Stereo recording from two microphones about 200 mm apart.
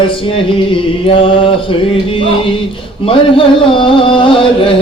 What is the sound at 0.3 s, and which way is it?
Music, 25° left (ahead or behind).